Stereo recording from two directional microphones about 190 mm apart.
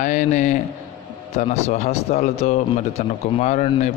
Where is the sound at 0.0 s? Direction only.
40° left (ahead or behind).